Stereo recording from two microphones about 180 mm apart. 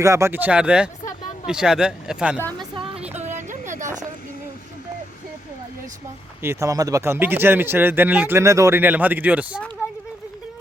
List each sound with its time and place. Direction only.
0.0 s speech: 15° right (ahead or behind)
3.2 s a sound: 40° right (ahead or behind)
6.4 s speech: 15° right (ahead or behind)